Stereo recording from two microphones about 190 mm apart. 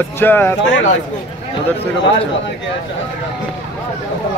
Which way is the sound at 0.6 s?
65° left (ahead or behind).